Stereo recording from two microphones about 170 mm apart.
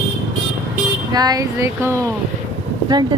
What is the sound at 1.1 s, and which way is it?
Speech, 25° right (ahead or behind).